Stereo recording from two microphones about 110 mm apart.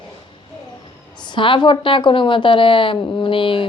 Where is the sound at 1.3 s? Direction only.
45° left (ahead or behind).